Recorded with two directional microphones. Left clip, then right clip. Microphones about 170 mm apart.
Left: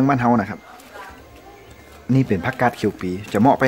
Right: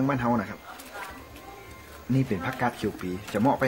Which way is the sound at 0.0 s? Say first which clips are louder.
Left 9 dB; 60° left (ahead or behind).